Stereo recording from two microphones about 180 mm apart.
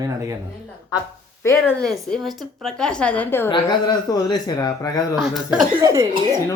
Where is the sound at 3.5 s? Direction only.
25° left (ahead or behind).